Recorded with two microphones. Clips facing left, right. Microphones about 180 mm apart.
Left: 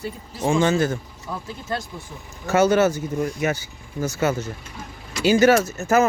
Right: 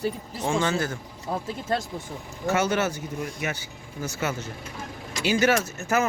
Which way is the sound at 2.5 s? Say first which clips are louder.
Left 7 dB; 40° left (ahead or behind).